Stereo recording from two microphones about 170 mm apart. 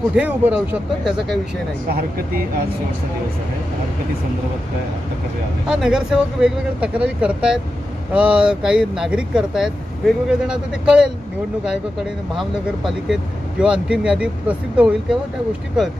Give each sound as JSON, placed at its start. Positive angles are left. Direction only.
{"t": 0.1, "sound": "speech", "side_deg": -10}
{"t": 1.9, "sound": "speech", "side_deg": -60}
{"t": 5.7, "sound": "speech", "side_deg": -5}
{"t": 12.4, "sound": "speech", "side_deg": 0}